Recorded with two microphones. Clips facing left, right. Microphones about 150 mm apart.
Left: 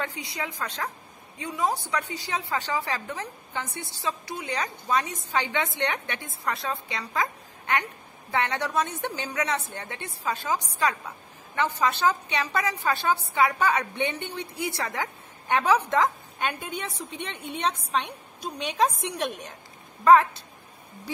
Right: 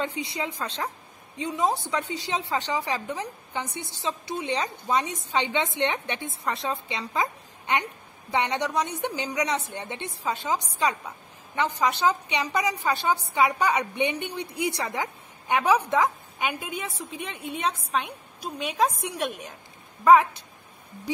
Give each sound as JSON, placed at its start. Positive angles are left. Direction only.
{"t": 0.0, "sound": "a woman's voice", "side_deg": -20}
{"t": 20.1, "sound": "a woman's voice", "side_deg": -15}